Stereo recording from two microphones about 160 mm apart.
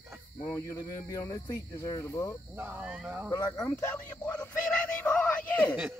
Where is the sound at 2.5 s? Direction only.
10° right (ahead or behind).